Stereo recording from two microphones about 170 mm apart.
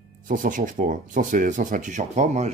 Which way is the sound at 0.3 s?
50° right (ahead or behind).